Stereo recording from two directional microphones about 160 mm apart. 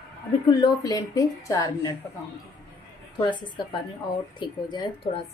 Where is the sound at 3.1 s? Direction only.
30° left (ahead or behind).